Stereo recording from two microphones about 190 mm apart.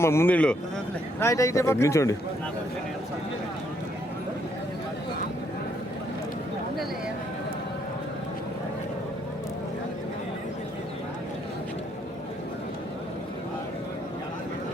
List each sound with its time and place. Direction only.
0.0 s speech: 15° left (ahead or behind)